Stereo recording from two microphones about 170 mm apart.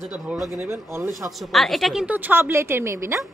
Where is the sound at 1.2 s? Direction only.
Centre (ahead or behind).